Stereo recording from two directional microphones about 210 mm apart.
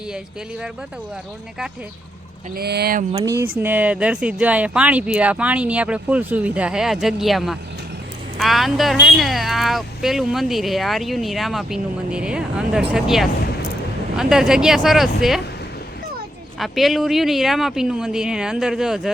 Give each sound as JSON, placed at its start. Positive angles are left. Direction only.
{"t": 2.6, "sound": "speech", "side_deg": -50}
{"t": 3.1, "sound": "speech", "side_deg": -15}
{"t": 16.6, "sound": "speech", "side_deg": 0}